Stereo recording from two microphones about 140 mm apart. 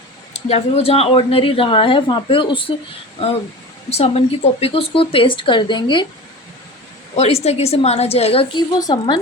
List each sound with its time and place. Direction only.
0.3 s speech: 50° left (ahead or behind)
3.8 s a woman's voice: 50° left (ahead or behind)
7.2 s a woman's voice: 50° left (ahead or behind)
8.7 s speech: 30° left (ahead or behind)